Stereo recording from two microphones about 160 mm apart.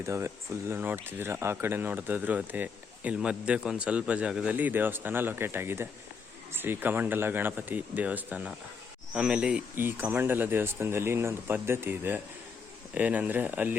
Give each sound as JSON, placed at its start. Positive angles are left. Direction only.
{"t": 0.0, "sound": "speech", "side_deg": -15}